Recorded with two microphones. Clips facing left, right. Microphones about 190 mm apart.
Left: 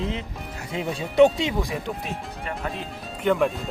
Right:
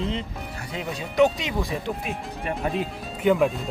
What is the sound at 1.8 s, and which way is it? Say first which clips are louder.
Speech: right 1 dB; centre (ahead or behind).